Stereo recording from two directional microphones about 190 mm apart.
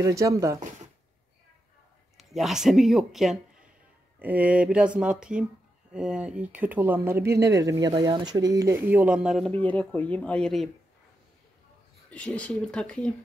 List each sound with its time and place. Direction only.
0.0 s speech: 15° right (ahead or behind)
2.1 s speech: centre (ahead or behind)
9.5 s speech: 10° left (ahead or behind)
12.1 s speech: 5° left (ahead or behind)